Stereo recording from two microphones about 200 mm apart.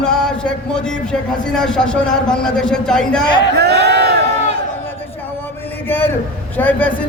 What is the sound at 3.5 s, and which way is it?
Speech, 55° right (ahead or behind).